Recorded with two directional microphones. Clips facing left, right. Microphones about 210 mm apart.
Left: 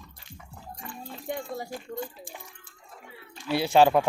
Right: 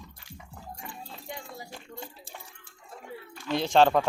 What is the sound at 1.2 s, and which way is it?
Speech, 55° left (ahead or behind).